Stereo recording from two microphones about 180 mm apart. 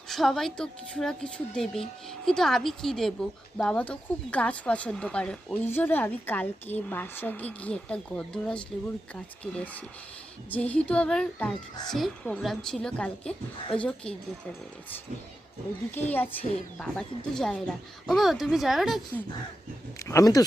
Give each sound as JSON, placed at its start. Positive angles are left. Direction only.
{"t": 0.1, "sound": "speech", "side_deg": 0}
{"t": 16.0, "sound": "speech", "side_deg": 10}
{"t": 20.1, "sound": "speech", "side_deg": 20}